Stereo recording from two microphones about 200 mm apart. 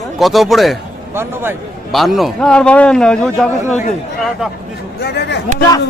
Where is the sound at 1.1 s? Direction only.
10° right (ahead or behind).